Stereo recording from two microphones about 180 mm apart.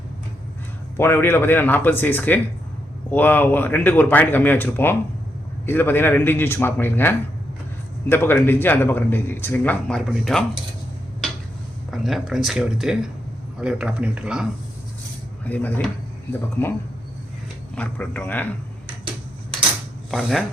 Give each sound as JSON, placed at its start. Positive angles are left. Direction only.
{"t": 0.9, "sound": "a man's voice", "side_deg": 10}
{"t": 10.1, "sound": "speech", "side_deg": 0}
{"t": 11.9, "sound": "speech", "side_deg": 0}
{"t": 15.4, "sound": "a man's voice", "side_deg": 10}
{"t": 17.7, "sound": "a man's voice", "side_deg": 10}
{"t": 20.1, "sound": "speech", "side_deg": 0}